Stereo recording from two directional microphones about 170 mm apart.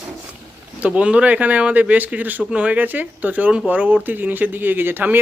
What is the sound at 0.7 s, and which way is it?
Speech, 5° right (ahead or behind).